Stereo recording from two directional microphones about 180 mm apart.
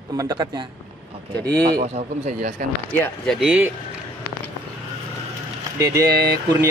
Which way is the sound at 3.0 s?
Centre (ahead or behind).